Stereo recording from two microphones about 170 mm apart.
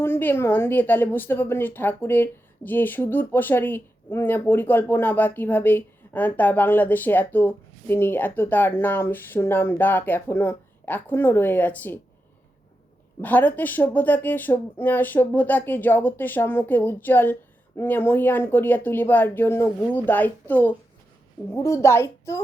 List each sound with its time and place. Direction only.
0.0 s a woman's voice: 10° left (ahead or behind)
13.2 s a woman's voice: 10° left (ahead or behind)